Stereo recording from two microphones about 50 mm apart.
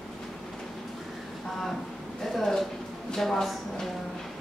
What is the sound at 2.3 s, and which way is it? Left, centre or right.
A woman's voice, centre.